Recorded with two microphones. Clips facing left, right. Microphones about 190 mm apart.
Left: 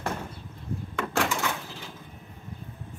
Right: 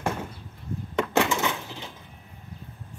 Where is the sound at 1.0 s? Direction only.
20° right (ahead or behind).